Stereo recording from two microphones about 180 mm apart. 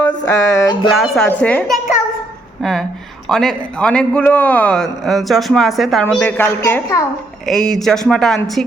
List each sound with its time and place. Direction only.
0.2 s music: 20° left (ahead or behind)
0.9 s a man's voice: centre (ahead or behind)